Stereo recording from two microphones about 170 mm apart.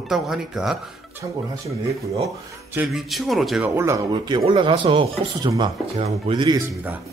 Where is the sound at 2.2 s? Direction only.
10° right (ahead or behind).